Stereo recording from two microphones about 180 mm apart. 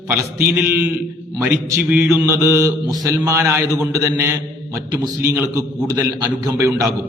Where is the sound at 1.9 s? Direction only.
5° right (ahead or behind).